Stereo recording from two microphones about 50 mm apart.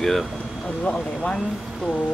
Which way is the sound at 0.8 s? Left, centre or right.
Left.